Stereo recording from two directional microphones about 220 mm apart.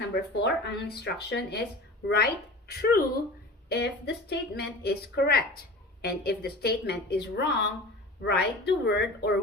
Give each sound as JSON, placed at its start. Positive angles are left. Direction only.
{"t": 0.1, "sound": "a woman's voice", "side_deg": 50}